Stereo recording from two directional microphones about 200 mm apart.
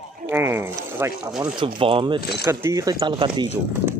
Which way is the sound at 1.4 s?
25° right (ahead or behind).